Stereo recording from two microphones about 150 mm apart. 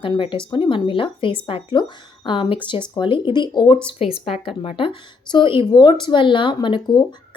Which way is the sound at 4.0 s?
45° left (ahead or behind).